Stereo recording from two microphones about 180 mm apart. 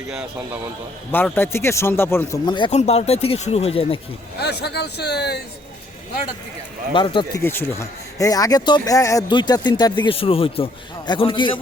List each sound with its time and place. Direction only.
0.1 s a man's voice: 10° right (ahead or behind)
1.1 s speech: 10° left (ahead or behind)
2.7 s speech: 35° left (ahead or behind)
4.4 s a man's voice: 65° left (ahead or behind)
6.9 s speech: 25° left (ahead or behind)
7.4 s speech: 15° left (ahead or behind)